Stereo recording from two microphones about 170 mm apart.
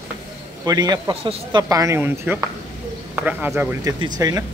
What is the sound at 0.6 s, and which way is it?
Speech, 20° right (ahead or behind).